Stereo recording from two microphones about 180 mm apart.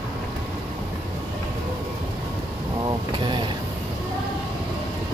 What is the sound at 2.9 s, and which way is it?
Speech, 25° right (ahead or behind).